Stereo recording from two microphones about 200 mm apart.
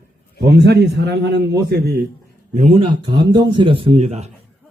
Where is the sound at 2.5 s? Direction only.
35° right (ahead or behind).